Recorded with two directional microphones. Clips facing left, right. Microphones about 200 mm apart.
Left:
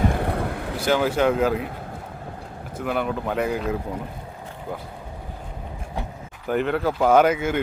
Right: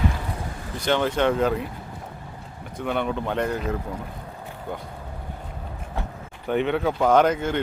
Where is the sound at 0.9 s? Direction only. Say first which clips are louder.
Left 1 dB; 5° left (ahead or behind).